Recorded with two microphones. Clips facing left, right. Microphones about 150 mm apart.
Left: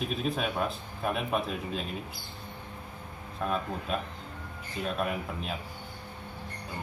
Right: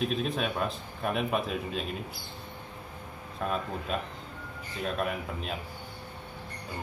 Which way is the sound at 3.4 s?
Centre (ahead or behind).